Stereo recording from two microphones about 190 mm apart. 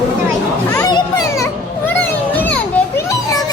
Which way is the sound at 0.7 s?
20° left (ahead or behind).